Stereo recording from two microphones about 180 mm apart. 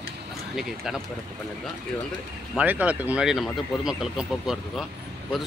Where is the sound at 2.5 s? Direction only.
10° right (ahead or behind).